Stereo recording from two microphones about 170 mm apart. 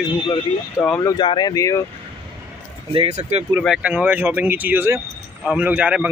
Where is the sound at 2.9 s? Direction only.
35° right (ahead or behind).